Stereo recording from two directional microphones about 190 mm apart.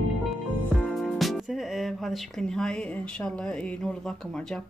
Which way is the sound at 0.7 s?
Centre (ahead or behind).